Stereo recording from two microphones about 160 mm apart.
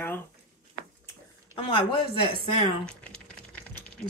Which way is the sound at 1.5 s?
35° left (ahead or behind).